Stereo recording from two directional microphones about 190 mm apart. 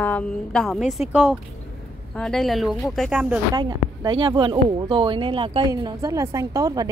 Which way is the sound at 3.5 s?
20° right (ahead or behind).